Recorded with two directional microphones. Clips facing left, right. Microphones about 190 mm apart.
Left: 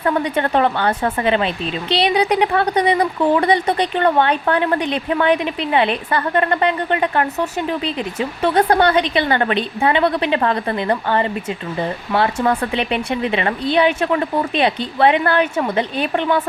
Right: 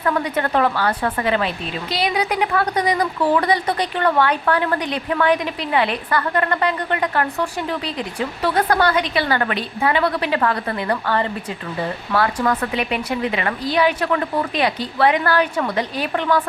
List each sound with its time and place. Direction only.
0.0 s speech: 25° left (ahead or behind)